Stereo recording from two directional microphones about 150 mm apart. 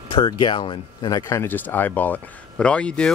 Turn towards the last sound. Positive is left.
turn(degrees=5)  # may be behind; listen again after turning